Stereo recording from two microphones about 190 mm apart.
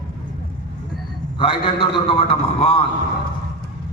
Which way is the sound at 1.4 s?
30° left (ahead or behind).